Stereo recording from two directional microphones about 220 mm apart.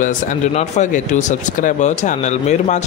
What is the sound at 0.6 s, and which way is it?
Speech, 35° left (ahead or behind).